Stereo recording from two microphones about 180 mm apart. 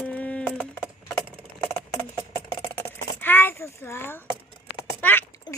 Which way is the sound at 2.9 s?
10° left (ahead or behind).